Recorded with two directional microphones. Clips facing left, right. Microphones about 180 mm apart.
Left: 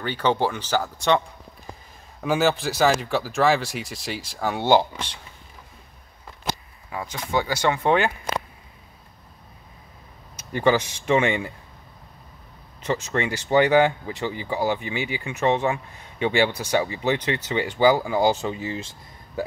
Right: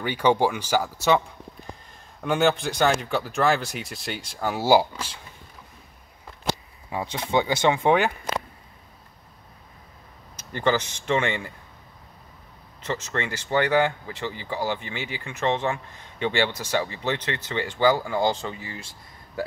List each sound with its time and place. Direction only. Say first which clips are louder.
0.0 s speech: right 2 dB; 10° right (ahead or behind)
2.2 s speech: even; centre (ahead or behind)
6.4 s speech: right 2 dB; 25° right (ahead or behind)
10.5 s speech: left 3 dB; 15° left (ahead or behind)
12.8 s speech: left 4 dB; 15° left (ahead or behind)